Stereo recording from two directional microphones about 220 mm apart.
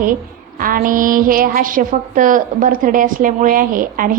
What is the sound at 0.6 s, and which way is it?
A woman's voice, 40° right (ahead or behind).